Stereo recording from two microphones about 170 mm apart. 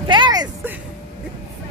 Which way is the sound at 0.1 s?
25° right (ahead or behind).